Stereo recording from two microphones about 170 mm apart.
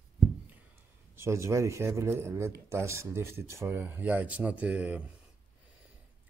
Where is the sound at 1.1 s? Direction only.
15° right (ahead or behind).